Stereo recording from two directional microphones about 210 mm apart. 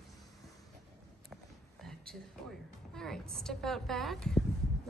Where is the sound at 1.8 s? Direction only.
Centre (ahead or behind).